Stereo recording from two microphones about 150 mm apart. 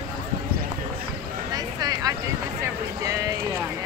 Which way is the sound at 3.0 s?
20° right (ahead or behind).